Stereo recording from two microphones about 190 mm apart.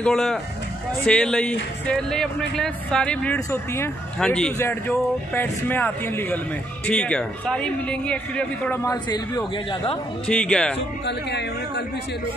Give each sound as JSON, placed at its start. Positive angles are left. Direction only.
{"t": 0.0, "sound": "speech", "side_deg": 5}
{"t": 10.2, "sound": "speech", "side_deg": 5}
{"t": 11.1, "sound": "speech", "side_deg": 65}